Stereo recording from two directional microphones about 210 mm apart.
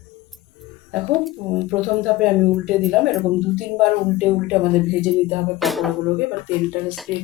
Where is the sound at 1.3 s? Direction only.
Centre (ahead or behind).